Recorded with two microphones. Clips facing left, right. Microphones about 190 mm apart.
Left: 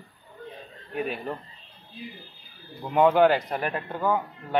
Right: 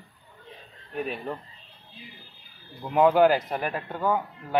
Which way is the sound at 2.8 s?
Centre (ahead or behind).